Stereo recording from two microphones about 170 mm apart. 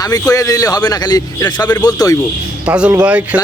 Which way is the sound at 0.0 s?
20° left (ahead or behind).